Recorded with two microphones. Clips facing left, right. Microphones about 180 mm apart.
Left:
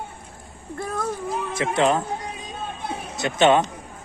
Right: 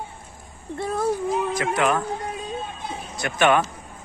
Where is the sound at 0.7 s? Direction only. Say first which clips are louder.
Right 2 dB; 25° right (ahead or behind).